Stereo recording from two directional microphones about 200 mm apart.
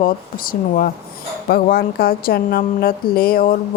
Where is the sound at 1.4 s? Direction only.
50° left (ahead or behind).